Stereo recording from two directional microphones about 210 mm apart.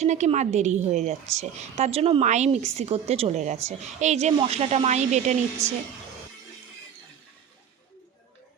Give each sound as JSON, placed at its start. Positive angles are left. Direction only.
{"t": 0.0, "sound": "a woman's voice", "side_deg": -35}
{"t": 5.6, "sound": "a woman's voice", "side_deg": -15}